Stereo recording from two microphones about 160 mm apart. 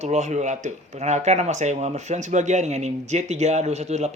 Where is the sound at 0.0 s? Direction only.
45° right (ahead or behind).